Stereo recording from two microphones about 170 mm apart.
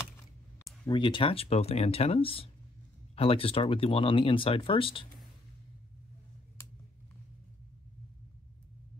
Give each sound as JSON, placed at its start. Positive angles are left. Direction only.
{"t": 0.8, "sound": "speech", "side_deg": 30}